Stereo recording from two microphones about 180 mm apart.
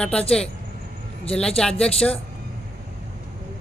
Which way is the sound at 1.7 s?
35° left (ahead or behind).